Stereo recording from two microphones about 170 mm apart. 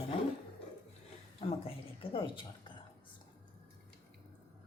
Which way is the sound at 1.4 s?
35° left (ahead or behind).